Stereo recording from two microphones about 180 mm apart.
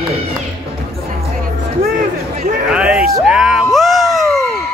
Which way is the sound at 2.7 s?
5° right (ahead or behind).